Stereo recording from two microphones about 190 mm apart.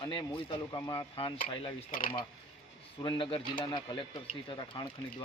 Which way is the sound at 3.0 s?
25° left (ahead or behind).